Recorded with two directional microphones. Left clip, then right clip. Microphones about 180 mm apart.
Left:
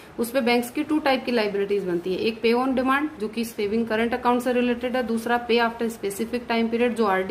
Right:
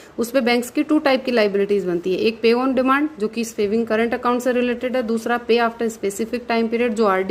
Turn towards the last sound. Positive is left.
turn(degrees=-40)  # may be behind; listen again after turning